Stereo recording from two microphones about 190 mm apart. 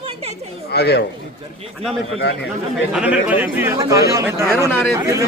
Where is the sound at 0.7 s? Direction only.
60° left (ahead or behind).